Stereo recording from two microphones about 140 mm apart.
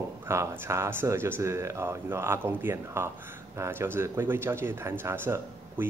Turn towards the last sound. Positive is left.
turn(degrees=-15)  # may be behind; listen again after turning